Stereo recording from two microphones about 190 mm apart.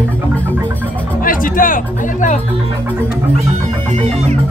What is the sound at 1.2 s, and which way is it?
Music, 45° left (ahead or behind).